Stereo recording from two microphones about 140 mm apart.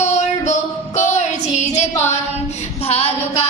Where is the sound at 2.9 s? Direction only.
45° left (ahead or behind).